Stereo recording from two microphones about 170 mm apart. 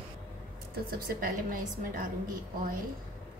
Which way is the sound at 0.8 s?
60° right (ahead or behind).